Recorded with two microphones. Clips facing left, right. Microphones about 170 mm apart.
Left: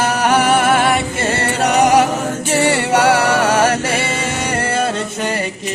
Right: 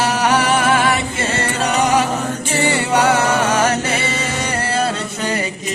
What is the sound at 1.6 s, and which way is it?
Music, 65° left (ahead or behind).